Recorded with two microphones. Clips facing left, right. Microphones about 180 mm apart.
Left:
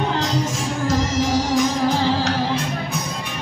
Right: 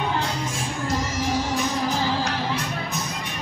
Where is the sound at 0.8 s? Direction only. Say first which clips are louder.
Left 6 dB; 75° left (ahead or behind).